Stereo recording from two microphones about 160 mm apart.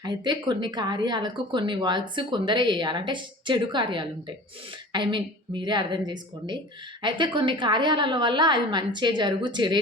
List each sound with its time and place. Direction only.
0.0 s speech: 25° right (ahead or behind)